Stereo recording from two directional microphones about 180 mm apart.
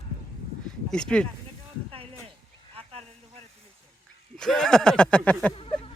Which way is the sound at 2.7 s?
35° right (ahead or behind).